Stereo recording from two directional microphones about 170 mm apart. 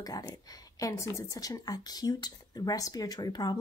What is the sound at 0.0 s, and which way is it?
Speech, 20° left (ahead or behind).